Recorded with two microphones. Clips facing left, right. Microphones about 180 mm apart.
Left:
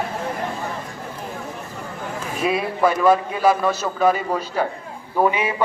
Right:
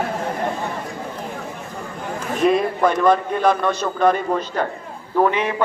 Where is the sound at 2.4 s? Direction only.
5° left (ahead or behind).